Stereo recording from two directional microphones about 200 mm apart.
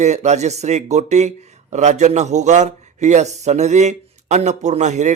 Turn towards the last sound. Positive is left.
turn(degrees=-35)  # may be behind; listen again after turning